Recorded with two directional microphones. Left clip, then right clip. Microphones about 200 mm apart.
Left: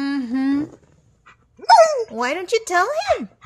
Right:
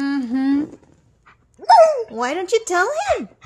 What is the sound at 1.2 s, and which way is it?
Dog, centre (ahead or behind).